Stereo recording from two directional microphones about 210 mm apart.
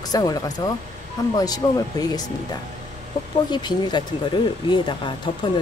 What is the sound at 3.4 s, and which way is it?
Speech, 20° left (ahead or behind).